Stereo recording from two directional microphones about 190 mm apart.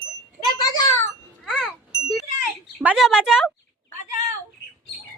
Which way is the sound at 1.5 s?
Centre (ahead or behind).